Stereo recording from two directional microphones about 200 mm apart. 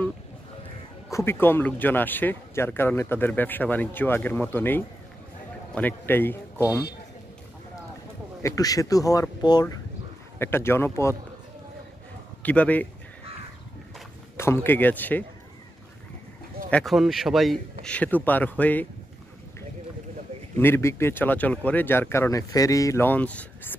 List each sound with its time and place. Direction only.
1.1 s speech: 10° left (ahead or behind)
8.4 s speech: 15° left (ahead or behind)
12.4 s speech: 10° left (ahead or behind)
14.3 s speech: 10° left (ahead or behind)
16.7 s speech: centre (ahead or behind)
20.5 s speech: 10° left (ahead or behind)